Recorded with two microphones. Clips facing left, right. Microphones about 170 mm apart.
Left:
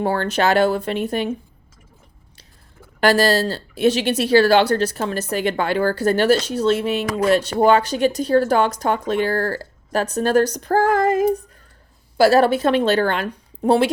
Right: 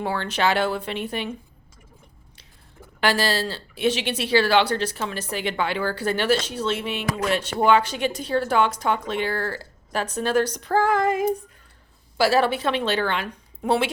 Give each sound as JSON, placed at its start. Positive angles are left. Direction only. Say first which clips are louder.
{"t": 0.0, "sound": "speech", "louder": "left 5 dB", "side_deg": 45}
{"t": 3.0, "sound": "a woman's voice", "louder": "left 7 dB", "side_deg": 45}